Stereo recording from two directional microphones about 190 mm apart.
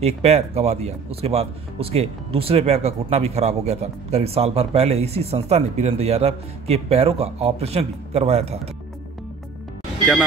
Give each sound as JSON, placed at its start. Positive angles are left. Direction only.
{"t": 0.0, "sound": "speech", "side_deg": -35}